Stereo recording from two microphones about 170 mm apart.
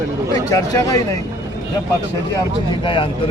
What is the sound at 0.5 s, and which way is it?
Speech, 20° left (ahead or behind).